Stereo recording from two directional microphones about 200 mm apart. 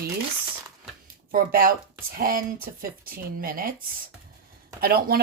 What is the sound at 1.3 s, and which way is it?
Speech, 45° right (ahead or behind).